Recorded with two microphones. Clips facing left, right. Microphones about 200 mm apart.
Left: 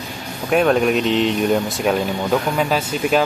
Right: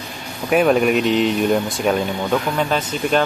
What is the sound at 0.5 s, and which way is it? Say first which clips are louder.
Speech: right 1 dB; 5° right (ahead or behind).